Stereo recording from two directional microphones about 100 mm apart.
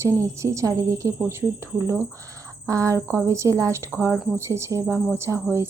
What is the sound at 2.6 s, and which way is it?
A woman's voice, 35° right (ahead or behind).